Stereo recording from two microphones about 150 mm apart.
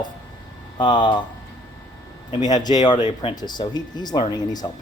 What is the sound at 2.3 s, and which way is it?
Speech, 25° left (ahead or behind).